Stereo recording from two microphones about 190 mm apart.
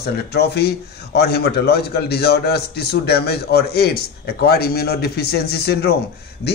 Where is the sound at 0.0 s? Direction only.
60° left (ahead or behind).